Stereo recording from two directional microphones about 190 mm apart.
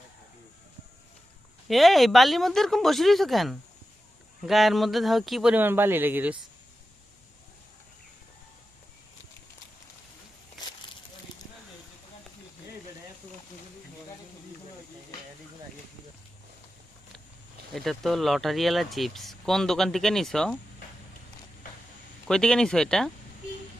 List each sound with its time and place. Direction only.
1.6 s speech: centre (ahead or behind)
17.7 s speech: centre (ahead or behind)
22.3 s speech: 5° left (ahead or behind)